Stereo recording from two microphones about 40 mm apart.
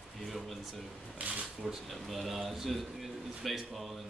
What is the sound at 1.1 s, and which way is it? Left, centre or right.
Speech, right.